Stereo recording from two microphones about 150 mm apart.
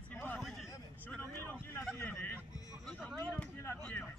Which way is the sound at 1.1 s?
10° left (ahead or behind).